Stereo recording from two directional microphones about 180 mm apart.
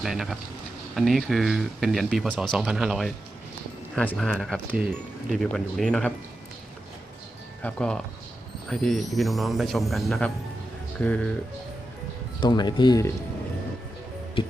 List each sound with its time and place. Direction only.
0.0 s speech: centre (ahead or behind)
4.7 s speech: 10° right (ahead or behind)
7.6 s speech: 5° left (ahead or behind)
12.4 s speech: 25° left (ahead or behind)